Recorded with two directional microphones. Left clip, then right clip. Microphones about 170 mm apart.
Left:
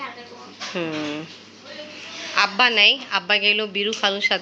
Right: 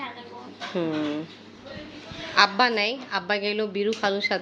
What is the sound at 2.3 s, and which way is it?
A woman's voice, 15° right (ahead or behind).